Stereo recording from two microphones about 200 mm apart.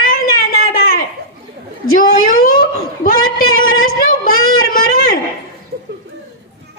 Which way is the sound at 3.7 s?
45° left (ahead or behind).